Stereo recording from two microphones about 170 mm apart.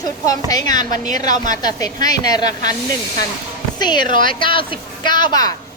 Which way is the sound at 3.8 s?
25° left (ahead or behind).